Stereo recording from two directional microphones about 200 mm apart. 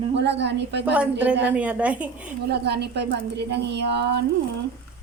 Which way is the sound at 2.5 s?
55° right (ahead or behind).